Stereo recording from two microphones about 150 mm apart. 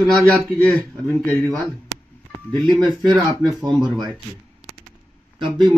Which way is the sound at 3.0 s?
30° right (ahead or behind).